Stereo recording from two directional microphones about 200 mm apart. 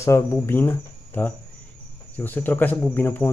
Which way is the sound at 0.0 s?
15° left (ahead or behind).